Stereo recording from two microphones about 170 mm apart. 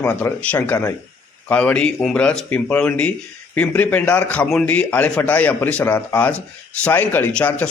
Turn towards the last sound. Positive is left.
turn(degrees=10)  # may be behind; listen again after turning